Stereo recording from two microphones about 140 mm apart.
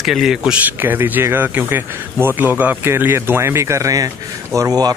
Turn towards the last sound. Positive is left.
turn(degrees=-25)  # may be behind; listen again after turning